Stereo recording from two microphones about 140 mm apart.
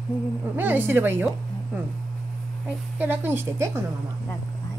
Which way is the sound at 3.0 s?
15° right (ahead or behind).